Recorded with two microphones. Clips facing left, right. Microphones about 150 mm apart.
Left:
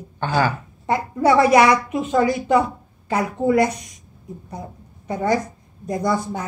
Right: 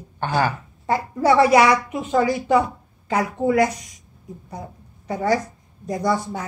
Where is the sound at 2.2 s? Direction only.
20° left (ahead or behind).